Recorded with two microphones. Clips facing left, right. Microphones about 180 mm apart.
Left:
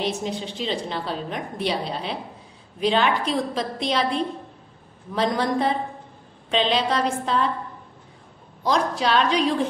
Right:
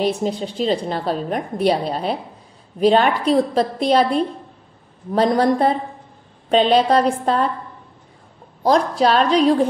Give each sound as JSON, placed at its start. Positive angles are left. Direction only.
{"t": 0.2, "sound": "a woman's voice", "side_deg": -40}
{"t": 8.6, "sound": "a woman's voice", "side_deg": -45}